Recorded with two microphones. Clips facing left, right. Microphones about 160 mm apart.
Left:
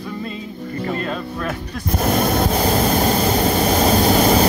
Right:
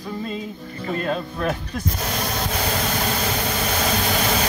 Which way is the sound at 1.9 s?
50° left (ahead or behind).